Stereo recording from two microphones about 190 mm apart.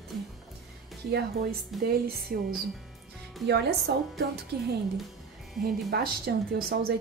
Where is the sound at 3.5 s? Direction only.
60° right (ahead or behind).